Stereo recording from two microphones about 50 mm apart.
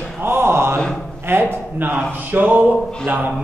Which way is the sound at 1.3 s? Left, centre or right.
Right.